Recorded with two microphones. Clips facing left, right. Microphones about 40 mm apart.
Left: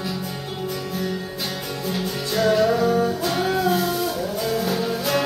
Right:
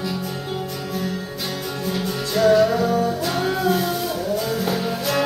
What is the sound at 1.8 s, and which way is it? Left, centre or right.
Music, centre.